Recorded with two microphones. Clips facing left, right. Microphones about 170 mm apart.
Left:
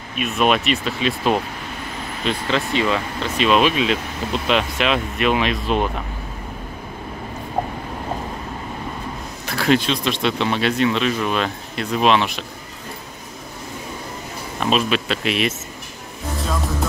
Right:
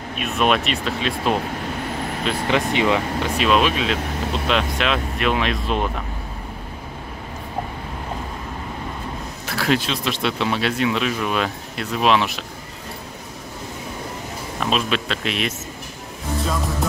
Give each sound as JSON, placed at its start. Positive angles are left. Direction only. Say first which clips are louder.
{"t": 0.2, "sound": "speech", "louder": "left 1 dB", "side_deg": 0}
{"t": 2.4, "sound": "speech", "louder": "right 2 dB", "side_deg": -15}
{"t": 3.3, "sound": "speech", "louder": "left 2 dB", "side_deg": 0}
{"t": 9.5, "sound": "speech", "louder": "left 3 dB", "side_deg": -5}
{"t": 14.6, "sound": "speech", "louder": "left 3 dB", "side_deg": 0}